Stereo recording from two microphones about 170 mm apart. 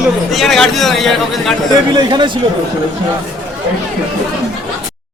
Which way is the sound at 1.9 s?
25° right (ahead or behind).